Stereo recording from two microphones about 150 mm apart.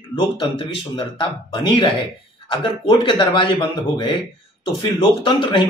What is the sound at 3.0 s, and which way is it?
Speech, 35° left (ahead or behind).